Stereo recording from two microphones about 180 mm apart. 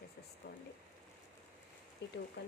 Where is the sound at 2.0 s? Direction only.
70° left (ahead or behind).